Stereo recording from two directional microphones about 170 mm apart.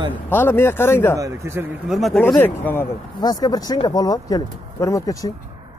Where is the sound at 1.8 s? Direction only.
Centre (ahead or behind).